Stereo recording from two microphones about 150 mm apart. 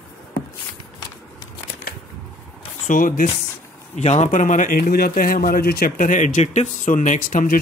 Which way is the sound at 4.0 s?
50° left (ahead or behind).